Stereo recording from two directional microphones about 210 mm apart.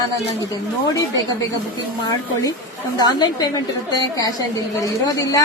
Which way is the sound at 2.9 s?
20° left (ahead or behind).